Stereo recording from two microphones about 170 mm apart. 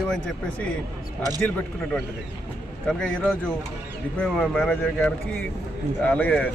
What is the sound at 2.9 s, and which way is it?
Speech, 5° left (ahead or behind).